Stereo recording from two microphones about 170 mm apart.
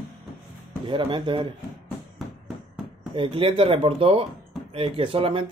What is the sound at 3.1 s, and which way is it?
Speech, 30° right (ahead or behind).